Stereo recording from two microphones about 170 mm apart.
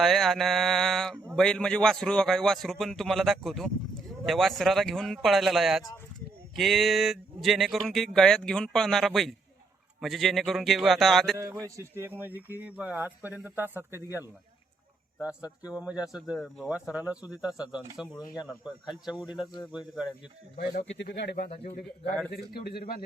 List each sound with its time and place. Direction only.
0.0 s speech: centre (ahead or behind)
11.3 s a man's voice: 20° right (ahead or behind)
15.2 s a man's voice: 5° right (ahead or behind)
19.7 s speech: 5° right (ahead or behind)
21.0 s a man's voice: 90° left; by 23.0 s 60° left (ahead or behind)